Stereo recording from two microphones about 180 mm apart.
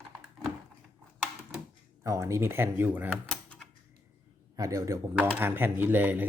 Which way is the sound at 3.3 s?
5° left (ahead or behind).